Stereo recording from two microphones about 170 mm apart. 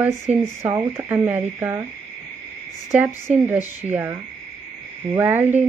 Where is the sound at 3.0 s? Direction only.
10° right (ahead or behind).